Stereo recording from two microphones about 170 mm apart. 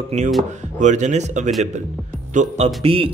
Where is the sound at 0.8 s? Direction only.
45° right (ahead or behind).